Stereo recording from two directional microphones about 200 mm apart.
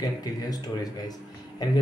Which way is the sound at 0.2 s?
20° left (ahead or behind).